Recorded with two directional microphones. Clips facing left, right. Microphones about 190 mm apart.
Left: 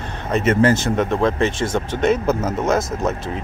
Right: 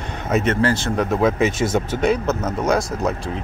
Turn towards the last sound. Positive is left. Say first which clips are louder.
# left 1 dB
turn(degrees=5)  # may be behind; listen again after turning